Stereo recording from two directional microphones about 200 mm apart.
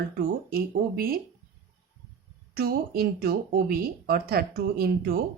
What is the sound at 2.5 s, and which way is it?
Speech, 50° right (ahead or behind).